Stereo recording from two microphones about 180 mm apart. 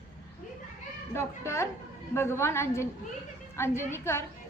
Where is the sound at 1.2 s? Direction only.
15° left (ahead or behind).